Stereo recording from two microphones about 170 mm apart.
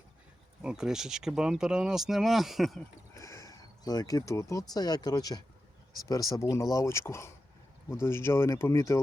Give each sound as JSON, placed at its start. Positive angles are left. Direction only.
{"t": 0.6, "sound": "speech", "side_deg": -5}
{"t": 3.2, "sound": "sheep", "side_deg": 20}
{"t": 4.7, "sound": "speech", "side_deg": 25}